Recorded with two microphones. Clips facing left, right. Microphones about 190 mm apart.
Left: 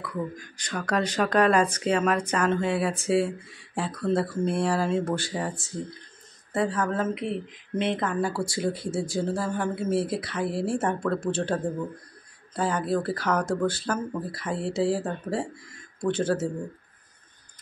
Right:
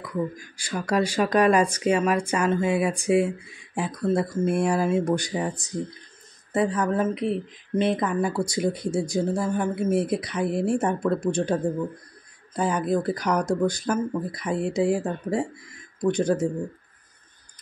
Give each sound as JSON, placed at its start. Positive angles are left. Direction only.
{"t": 0.6, "sound": "speech", "side_deg": -10}